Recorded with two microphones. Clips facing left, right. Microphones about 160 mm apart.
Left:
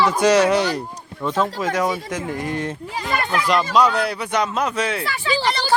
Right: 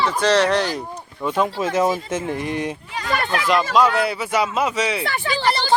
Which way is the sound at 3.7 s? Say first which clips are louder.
Even; centre (ahead or behind).